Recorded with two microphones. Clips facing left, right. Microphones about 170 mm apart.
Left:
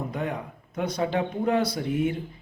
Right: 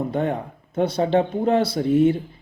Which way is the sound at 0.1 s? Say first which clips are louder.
Right 7 dB; 30° right (ahead or behind).